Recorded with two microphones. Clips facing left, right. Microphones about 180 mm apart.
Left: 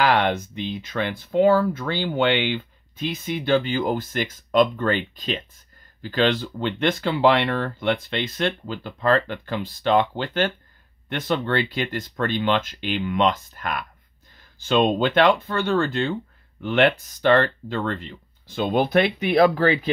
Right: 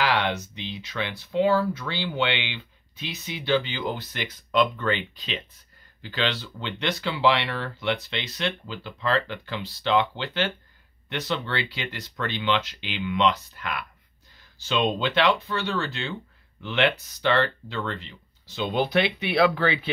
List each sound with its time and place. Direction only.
0.0 s speech: 50° left (ahead or behind)